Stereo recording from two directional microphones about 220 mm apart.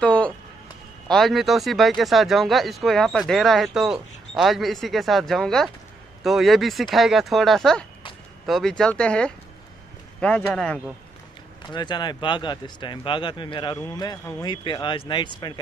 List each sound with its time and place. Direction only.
0.0 s a sound: 5° left (ahead or behind)
1.0 s speech: centre (ahead or behind)
11.6 s speech: 20° left (ahead or behind)